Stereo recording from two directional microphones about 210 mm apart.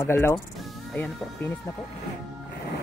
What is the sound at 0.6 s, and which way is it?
Music, 5° left (ahead or behind).